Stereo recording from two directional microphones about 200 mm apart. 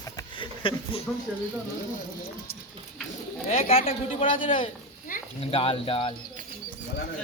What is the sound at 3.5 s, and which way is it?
Speech, 30° left (ahead or behind).